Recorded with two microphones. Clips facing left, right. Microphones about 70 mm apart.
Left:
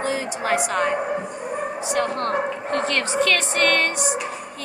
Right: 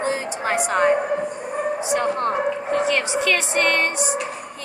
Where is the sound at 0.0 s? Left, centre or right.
Right.